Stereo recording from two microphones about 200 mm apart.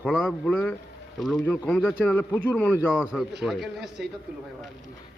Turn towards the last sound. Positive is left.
turn(degrees=0)  # may be behind; listen again after turning